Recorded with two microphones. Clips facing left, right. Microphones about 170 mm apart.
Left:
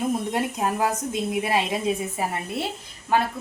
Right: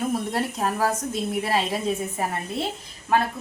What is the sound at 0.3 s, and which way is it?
A woman's voice, 15° left (ahead or behind).